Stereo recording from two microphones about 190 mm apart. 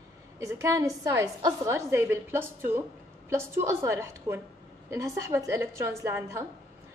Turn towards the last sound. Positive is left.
turn(degrees=-15)  # may be behind; listen again after turning